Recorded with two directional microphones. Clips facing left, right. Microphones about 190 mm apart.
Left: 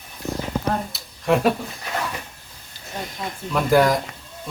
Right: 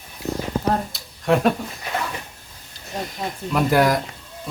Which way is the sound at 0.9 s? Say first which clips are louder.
Even; centre (ahead or behind).